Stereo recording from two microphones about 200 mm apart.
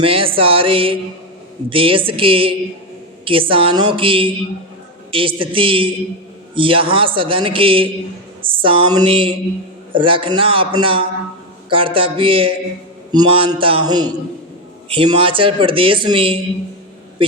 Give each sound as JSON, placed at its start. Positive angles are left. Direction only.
{"t": 0.0, "sound": "a man's voice", "side_deg": -25}
{"t": 8.4, "sound": "a sound", "side_deg": -25}
{"t": 9.9, "sound": "a man's voice", "side_deg": -25}